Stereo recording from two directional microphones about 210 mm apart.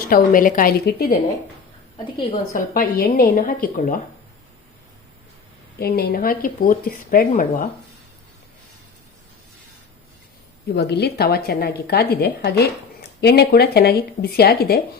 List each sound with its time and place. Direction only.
0.1 s a woman's voice: 40° left (ahead or behind)
2.5 s a woman's voice: 40° left (ahead or behind)
5.8 s a woman's voice: 45° left (ahead or behind)
10.8 s a woman's voice: 50° left (ahead or behind)